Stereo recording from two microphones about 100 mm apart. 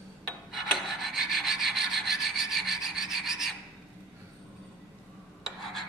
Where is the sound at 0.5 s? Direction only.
Centre (ahead or behind).